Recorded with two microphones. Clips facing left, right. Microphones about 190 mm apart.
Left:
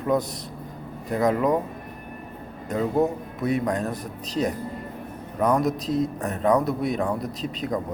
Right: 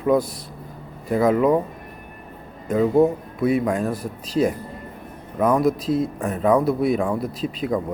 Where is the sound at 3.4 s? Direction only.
5° right (ahead or behind).